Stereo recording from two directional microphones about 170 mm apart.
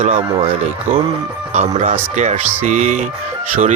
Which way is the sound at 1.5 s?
45° right (ahead or behind).